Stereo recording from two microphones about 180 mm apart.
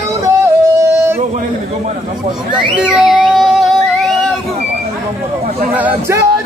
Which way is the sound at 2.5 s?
5° right (ahead or behind).